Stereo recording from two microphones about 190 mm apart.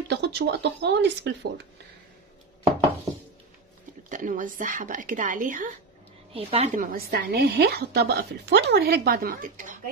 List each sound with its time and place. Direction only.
0.1 s a woman's voice: 65° right (ahead or behind)
4.1 s speech: 45° right (ahead or behind)
6.3 s a woman's voice: 35° right (ahead or behind)